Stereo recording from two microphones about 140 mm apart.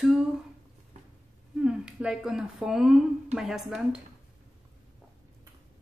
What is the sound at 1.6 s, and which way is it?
Speech, 5° right (ahead or behind).